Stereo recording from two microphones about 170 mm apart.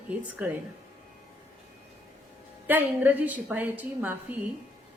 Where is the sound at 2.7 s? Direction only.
10° right (ahead or behind).